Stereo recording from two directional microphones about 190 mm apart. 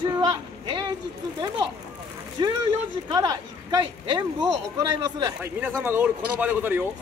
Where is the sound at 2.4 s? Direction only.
25° right (ahead or behind).